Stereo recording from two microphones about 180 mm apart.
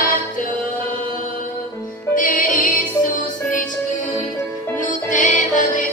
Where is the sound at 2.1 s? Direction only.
50° left (ahead or behind).